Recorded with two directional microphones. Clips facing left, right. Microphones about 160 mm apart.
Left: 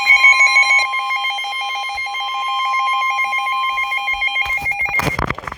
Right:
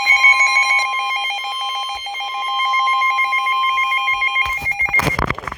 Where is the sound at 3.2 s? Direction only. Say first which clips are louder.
Right 1 dB; 20° left (ahead or behind).